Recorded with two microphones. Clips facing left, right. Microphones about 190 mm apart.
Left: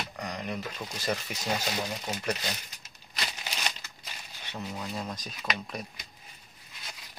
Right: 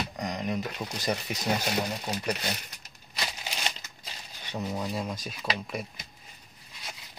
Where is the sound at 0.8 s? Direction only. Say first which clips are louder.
Right 2 dB; 15° right (ahead or behind).